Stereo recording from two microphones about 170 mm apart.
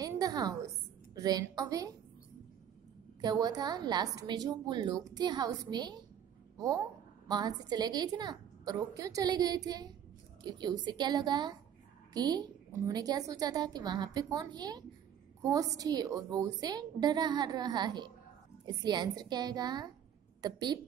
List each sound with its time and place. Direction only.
0.0 s a sound: 20° right (ahead or behind)
1.1 s a woman's voice: 20° right (ahead or behind)
3.2 s a woman's voice: 25° right (ahead or behind)
7.2 s a woman's voice: 25° right (ahead or behind)